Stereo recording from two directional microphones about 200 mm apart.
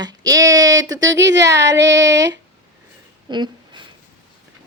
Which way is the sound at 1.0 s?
65° right (ahead or behind).